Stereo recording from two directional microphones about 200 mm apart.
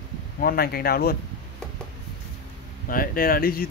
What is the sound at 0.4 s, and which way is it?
Speech, 50° left (ahead or behind).